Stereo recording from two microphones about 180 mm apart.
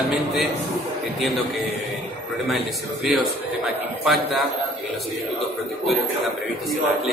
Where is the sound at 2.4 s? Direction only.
Centre (ahead or behind).